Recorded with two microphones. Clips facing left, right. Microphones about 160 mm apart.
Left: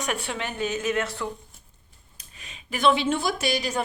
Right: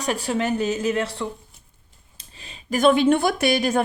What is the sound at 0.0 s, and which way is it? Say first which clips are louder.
A woman's voice: right 6 dB; 35° right (ahead or behind).